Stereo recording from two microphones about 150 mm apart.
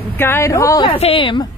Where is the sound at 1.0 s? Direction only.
35° left (ahead or behind).